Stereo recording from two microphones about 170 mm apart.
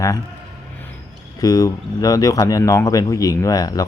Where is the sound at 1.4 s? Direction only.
20° left (ahead or behind).